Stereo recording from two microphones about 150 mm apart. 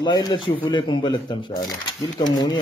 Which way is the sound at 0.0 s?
30° left (ahead or behind).